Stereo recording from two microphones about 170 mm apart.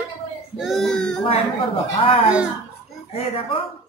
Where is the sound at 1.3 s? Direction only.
30° left (ahead or behind).